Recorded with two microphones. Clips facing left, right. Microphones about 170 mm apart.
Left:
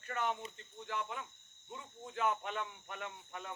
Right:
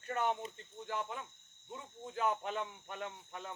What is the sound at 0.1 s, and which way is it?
Speech, 35° right (ahead or behind).